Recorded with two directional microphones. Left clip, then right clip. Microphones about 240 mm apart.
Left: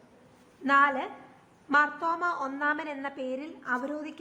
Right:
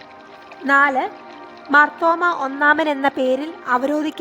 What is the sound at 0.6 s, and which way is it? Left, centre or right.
A woman's voice, right.